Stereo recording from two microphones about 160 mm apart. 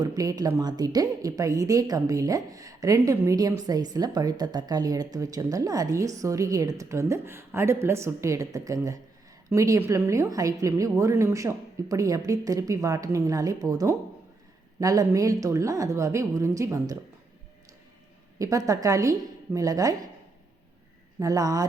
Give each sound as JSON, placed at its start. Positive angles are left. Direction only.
{"t": 0.0, "sound": "speech", "side_deg": -20}
{"t": 18.3, "sound": "speech", "side_deg": -20}
{"t": 21.2, "sound": "speech", "side_deg": -20}